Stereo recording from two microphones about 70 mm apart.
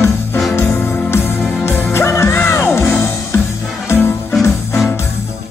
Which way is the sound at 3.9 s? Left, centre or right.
Left.